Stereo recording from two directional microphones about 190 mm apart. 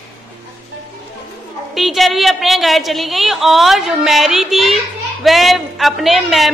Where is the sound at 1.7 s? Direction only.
Centre (ahead or behind).